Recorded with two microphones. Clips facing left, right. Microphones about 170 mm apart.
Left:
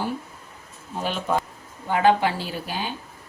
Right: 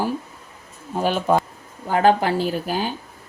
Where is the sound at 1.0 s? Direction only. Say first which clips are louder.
Right 6 dB; 45° right (ahead or behind).